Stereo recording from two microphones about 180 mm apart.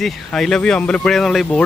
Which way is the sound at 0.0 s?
Centre (ahead or behind).